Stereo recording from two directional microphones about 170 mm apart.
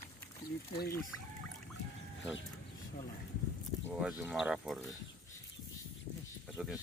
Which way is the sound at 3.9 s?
5° right (ahead or behind).